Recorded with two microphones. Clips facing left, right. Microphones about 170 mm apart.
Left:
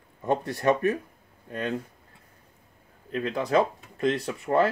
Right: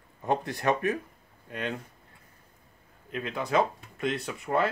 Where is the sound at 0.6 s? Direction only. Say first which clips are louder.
Left 4 dB; 35° left (ahead or behind).